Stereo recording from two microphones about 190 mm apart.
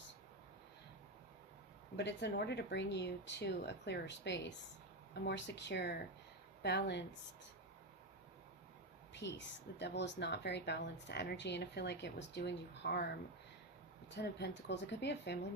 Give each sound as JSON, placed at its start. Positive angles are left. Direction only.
{"t": 2.0, "sound": "speech", "side_deg": 65}
{"t": 9.2, "sound": "speech", "side_deg": 65}